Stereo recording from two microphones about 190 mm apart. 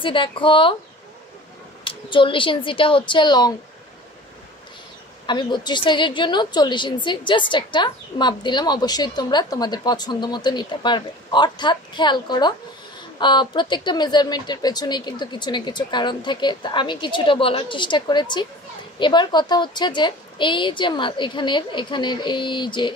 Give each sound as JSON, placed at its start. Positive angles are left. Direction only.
{"t": 0.0, "sound": "a woman's voice", "side_deg": 25}
{"t": 1.9, "sound": "a woman's voice", "side_deg": 25}
{"t": 5.2, "sound": "a woman's voice", "side_deg": 25}